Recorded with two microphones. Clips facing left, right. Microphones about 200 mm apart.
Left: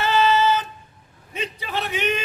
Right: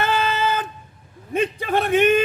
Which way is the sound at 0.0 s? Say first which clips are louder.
Left 3 dB; 50° right (ahead or behind).